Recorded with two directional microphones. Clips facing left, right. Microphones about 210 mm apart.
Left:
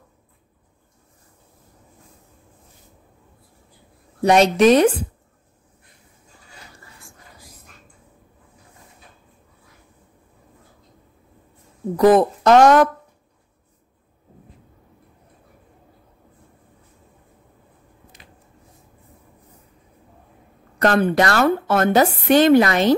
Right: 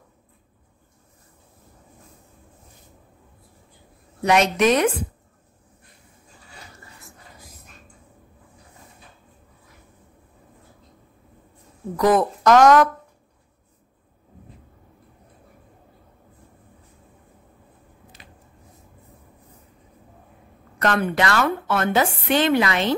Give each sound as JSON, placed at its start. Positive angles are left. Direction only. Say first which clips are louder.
{"t": 4.2, "sound": "speech", "louder": "left 4 dB", "side_deg": 35}
{"t": 12.0, "sound": "speech", "louder": "left 5 dB", "side_deg": 30}
{"t": 20.8, "sound": "speech", "louder": "left 5 dB", "side_deg": 35}